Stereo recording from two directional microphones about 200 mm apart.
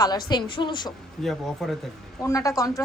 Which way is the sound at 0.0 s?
20° left (ahead or behind).